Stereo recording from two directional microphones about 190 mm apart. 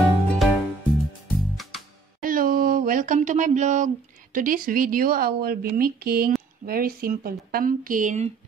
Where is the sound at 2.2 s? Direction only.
50° right (ahead or behind).